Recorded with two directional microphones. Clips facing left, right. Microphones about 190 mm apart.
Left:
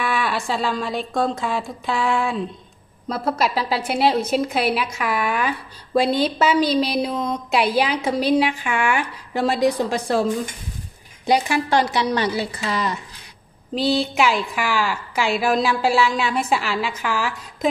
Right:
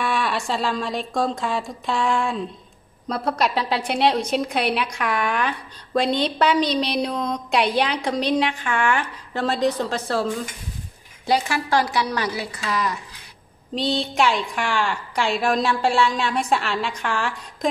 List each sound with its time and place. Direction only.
0.0 s a woman's voice: centre (ahead or behind); by 12.9 s 25° left (ahead or behind)
13.7 s a woman's voice: 5° left (ahead or behind)